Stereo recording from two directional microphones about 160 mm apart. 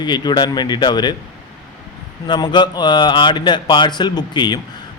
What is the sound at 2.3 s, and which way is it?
Speech, 30° left (ahead or behind).